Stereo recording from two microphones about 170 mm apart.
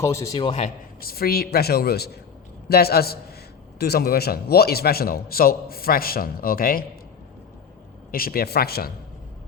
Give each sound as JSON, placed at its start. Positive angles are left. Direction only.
{"t": 0.0, "sound": "a man's voice", "side_deg": 15}
{"t": 0.3, "sound": "a man's voice", "side_deg": 35}
{"t": 1.0, "sound": "a man's voice", "side_deg": 65}
{"t": 8.1, "sound": "a man's voice", "side_deg": 60}